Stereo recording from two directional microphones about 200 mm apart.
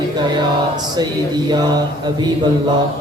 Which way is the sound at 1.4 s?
20° right (ahead or behind).